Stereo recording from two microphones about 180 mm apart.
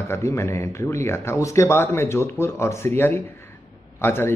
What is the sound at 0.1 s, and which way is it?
A man's voice, 15° left (ahead or behind).